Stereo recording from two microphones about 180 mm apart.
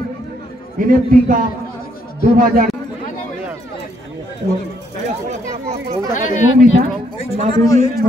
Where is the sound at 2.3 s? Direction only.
50° right (ahead or behind).